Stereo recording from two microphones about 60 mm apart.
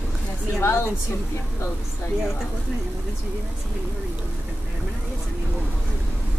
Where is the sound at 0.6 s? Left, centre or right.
Left.